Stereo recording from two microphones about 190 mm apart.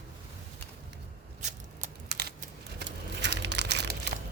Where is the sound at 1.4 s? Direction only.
40° right (ahead or behind).